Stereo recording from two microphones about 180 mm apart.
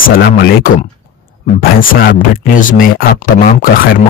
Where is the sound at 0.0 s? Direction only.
65° left (ahead or behind).